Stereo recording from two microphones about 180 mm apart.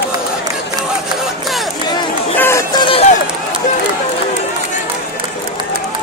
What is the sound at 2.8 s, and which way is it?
Run, 30° left (ahead or behind).